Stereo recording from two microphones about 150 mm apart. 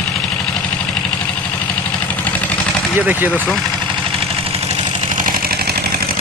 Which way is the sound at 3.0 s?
10° right (ahead or behind).